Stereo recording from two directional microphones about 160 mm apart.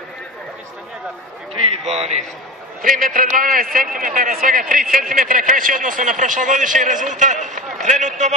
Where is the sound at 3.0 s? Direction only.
60° right (ahead or behind).